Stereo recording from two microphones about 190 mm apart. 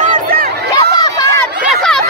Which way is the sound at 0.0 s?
45° right (ahead or behind).